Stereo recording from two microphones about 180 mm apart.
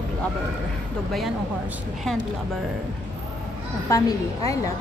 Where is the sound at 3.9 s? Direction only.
20° left (ahead or behind).